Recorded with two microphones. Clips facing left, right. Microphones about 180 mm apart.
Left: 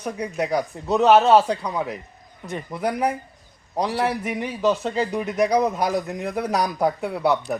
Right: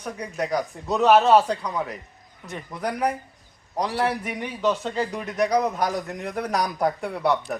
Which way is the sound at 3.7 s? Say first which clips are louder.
Left 2 dB; 25° left (ahead or behind).